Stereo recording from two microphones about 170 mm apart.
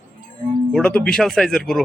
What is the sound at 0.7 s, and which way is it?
A man's voice, 5° left (ahead or behind).